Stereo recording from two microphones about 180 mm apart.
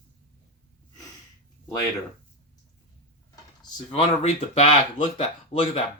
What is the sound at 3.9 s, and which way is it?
Speech, 35° left (ahead or behind).